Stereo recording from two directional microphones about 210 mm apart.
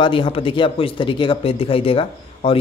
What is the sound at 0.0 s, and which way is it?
A man's voice, 25° left (ahead or behind).